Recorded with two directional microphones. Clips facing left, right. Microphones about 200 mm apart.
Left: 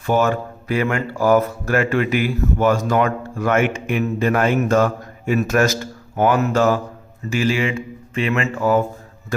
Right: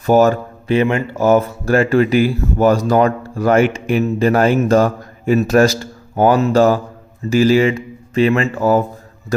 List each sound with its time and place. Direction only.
0.0 s speech: 40° right (ahead or behind)
0.7 s speech: 25° right (ahead or behind)